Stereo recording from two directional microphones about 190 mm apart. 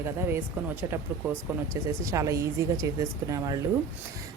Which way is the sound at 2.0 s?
15° right (ahead or behind).